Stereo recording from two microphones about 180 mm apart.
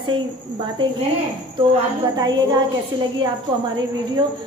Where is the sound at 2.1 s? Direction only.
25° right (ahead or behind).